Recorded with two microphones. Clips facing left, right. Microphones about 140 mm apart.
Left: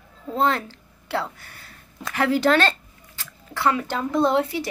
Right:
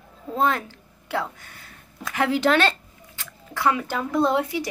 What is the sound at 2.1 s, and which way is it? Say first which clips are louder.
Speech: left 1 dB; 15° right (ahead or behind).